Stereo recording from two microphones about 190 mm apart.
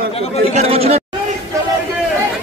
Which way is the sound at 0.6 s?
30° right (ahead or behind).